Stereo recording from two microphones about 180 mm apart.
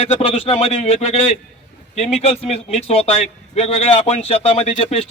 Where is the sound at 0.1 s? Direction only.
35° left (ahead or behind).